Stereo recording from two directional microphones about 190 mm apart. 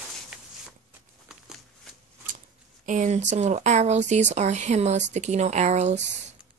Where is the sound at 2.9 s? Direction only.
40° right (ahead or behind).